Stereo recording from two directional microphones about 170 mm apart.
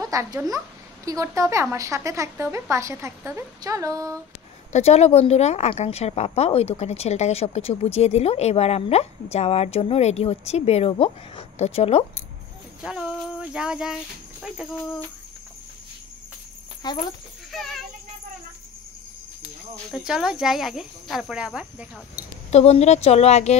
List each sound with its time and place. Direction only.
0.0 s a woman's voice: 20° right (ahead or behind)
4.7 s a woman's voice: 40° left (ahead or behind)
12.8 s speech: 5° right (ahead or behind)
16.8 s speech: 25° left (ahead or behind)
17.5 s child singing: centre (ahead or behind)
19.9 s speech: 5° right (ahead or behind)
22.5 s a woman's voice: 40° left (ahead or behind)